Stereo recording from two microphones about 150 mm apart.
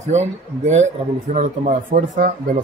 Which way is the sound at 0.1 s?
50° right (ahead or behind).